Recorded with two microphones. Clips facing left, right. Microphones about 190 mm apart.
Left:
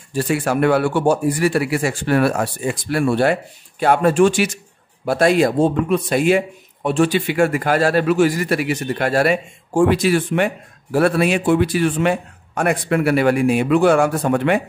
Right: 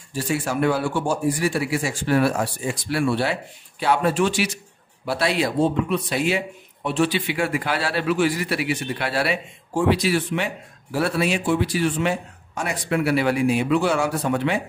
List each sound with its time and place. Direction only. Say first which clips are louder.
0.1 s speech: left 5 dB; 60° left (ahead or behind)